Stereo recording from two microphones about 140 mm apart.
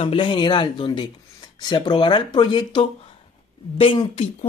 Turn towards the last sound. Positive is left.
turn(degrees=40)  # may be behind; listen again after turning